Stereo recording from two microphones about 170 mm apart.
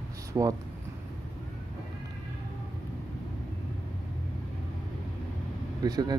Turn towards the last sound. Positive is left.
turn(degrees=-25)  # may be behind; listen again after turning